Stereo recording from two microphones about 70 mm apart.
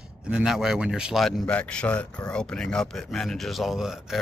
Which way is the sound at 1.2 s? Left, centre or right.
Centre.